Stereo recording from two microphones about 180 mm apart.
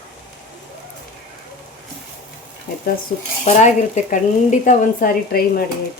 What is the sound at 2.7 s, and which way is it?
A woman's voice, 45° left (ahead or behind).